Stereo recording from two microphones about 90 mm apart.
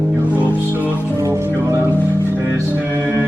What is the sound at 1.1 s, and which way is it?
Music, 35° right (ahead or behind).